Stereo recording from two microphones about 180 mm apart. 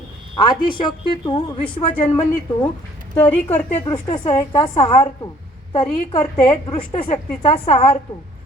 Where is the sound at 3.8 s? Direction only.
25° left (ahead or behind).